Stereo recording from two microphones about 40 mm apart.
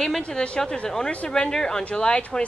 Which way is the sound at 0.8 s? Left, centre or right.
Centre.